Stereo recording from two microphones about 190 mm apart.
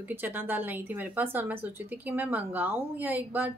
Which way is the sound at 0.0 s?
10° right (ahead or behind).